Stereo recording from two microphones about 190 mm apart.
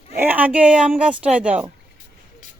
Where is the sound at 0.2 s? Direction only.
10° right (ahead or behind).